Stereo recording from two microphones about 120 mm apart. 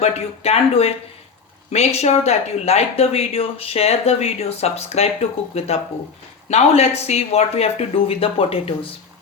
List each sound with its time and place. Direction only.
0.0 s speech: 60° left (ahead or behind)